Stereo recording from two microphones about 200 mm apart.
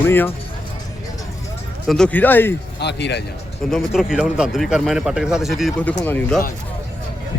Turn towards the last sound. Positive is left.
turn(degrees=10)  # may be behind; listen again after turning